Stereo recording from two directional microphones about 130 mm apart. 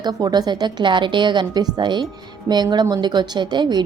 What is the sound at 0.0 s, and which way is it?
A woman's voice, 30° right (ahead or behind).